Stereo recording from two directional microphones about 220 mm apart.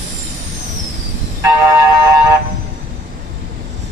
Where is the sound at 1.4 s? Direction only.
15° right (ahead or behind).